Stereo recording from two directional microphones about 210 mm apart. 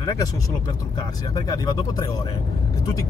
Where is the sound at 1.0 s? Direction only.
20° left (ahead or behind).